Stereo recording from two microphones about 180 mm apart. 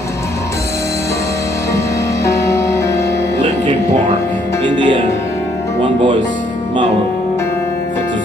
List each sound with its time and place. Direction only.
2.2 s music: 15° left (ahead or behind)
4.7 s speech: 25° right (ahead or behind)